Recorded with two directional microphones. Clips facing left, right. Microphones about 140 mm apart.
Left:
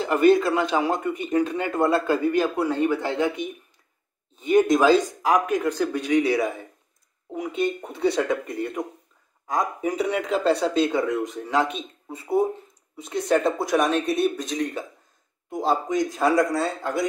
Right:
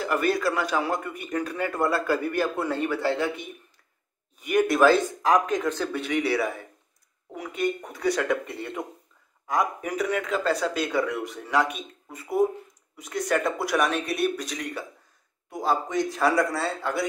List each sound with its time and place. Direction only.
0.0 s a man's voice: 25° left (ahead or behind)